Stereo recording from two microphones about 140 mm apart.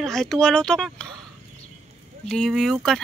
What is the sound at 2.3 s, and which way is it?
Speech, centre (ahead or behind).